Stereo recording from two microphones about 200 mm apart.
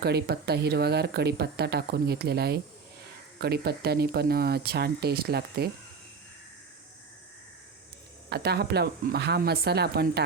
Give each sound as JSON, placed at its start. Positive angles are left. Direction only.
{"t": 0.0, "sound": "speech", "side_deg": -55}
{"t": 8.3, "sound": "speech", "side_deg": -55}